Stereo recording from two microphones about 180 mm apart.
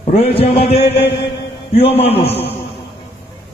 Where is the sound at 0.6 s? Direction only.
60° left (ahead or behind).